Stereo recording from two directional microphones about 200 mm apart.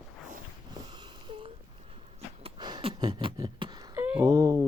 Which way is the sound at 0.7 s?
20° right (ahead or behind).